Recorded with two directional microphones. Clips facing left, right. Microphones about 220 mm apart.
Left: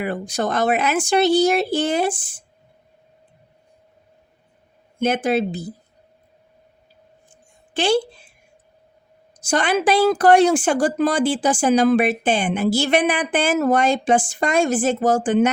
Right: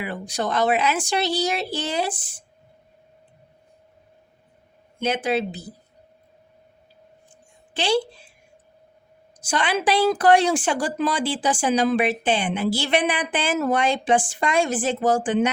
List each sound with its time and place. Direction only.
0.0 s a woman's voice: 50° left (ahead or behind)
4.9 s a woman's voice: 50° left (ahead or behind)
7.7 s a woman's voice: 50° left (ahead or behind)
9.5 s a woman's voice: 45° left (ahead or behind)